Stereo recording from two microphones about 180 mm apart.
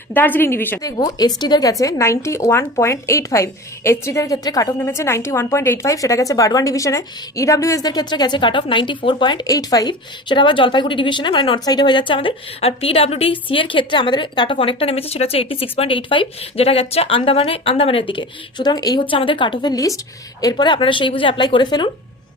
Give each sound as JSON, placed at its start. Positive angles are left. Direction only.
{"t": 0.1, "sound": "a woman's voice", "side_deg": 10}